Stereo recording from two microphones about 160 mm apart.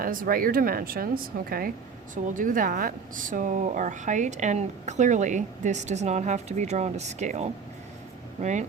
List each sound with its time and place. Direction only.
0.0 s a woman's voice: 60° right (ahead or behind)